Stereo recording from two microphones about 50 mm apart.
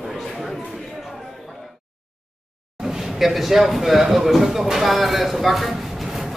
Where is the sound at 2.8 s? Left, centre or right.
Centre.